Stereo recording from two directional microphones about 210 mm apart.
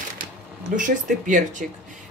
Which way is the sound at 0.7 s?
40° right (ahead or behind).